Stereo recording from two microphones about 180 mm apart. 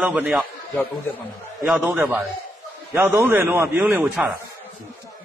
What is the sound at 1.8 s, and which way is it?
A man's voice, 10° right (ahead or behind).